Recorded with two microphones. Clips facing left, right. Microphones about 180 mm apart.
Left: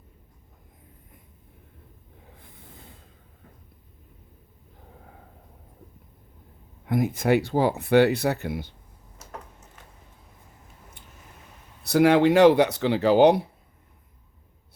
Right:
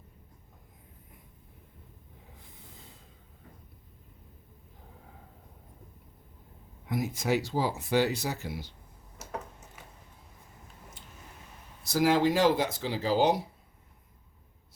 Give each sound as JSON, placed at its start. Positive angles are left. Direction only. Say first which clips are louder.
{"t": 6.8, "sound": "speech", "louder": "left 7 dB", "side_deg": 55}
{"t": 11.8, "sound": "speech", "louder": "left 7 dB", "side_deg": 65}